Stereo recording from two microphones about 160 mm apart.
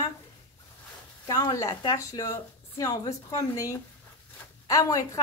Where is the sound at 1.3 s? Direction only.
25° left (ahead or behind).